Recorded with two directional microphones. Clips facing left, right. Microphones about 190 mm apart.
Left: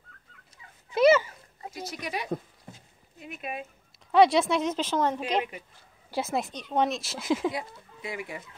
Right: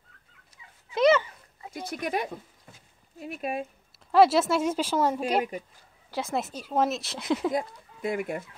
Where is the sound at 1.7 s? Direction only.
55° right (ahead or behind).